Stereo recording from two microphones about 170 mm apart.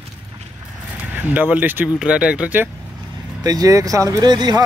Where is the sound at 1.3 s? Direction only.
10° right (ahead or behind).